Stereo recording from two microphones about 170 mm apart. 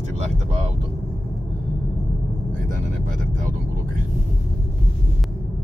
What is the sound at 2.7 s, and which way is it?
Speech, 50° right (ahead or behind).